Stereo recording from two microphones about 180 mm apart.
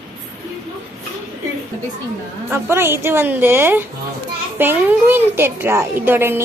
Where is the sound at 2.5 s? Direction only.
15° right (ahead or behind).